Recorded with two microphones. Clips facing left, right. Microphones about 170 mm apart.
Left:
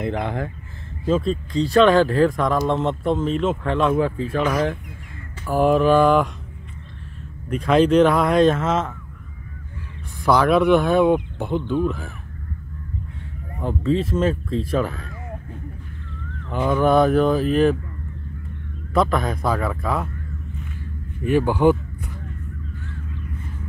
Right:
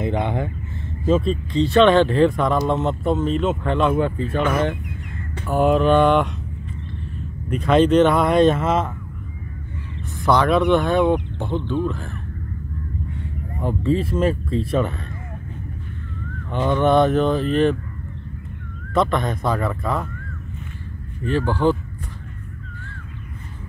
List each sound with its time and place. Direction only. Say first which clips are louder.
0.0 s speech: right 2 dB; centre (ahead or behind)
5.5 s speech: even; centre (ahead or behind)
7.4 s speech: right 1 dB; centre (ahead or behind)
10.2 s speech: left 1 dB; 5° left (ahead or behind)
13.6 s speech: even; centre (ahead or behind)
16.4 s speech: even; 5° left (ahead or behind)
18.9 s speech: even; centre (ahead or behind)
21.2 s speech: left 3 dB; 15° left (ahead or behind)